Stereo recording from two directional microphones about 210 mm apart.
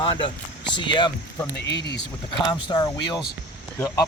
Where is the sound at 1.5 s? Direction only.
55° left (ahead or behind).